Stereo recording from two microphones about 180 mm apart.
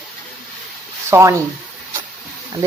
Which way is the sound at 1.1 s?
15° right (ahead or behind).